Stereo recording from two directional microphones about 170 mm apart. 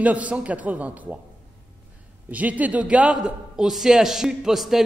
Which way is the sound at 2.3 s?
10° right (ahead or behind).